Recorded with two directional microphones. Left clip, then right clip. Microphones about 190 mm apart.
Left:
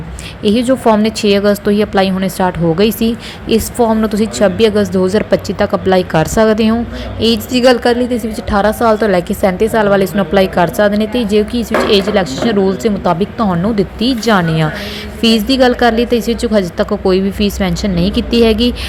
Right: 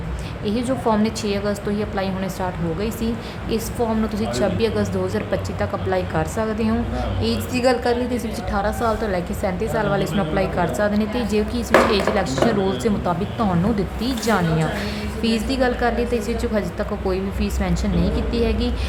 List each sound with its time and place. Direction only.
0.4 s a woman's voice: 30° left (ahead or behind)